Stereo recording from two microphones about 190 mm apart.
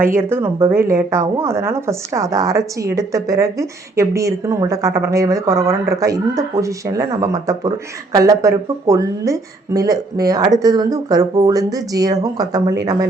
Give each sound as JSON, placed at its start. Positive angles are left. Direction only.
{"t": 0.2, "sound": "a woman's voice", "side_deg": -10}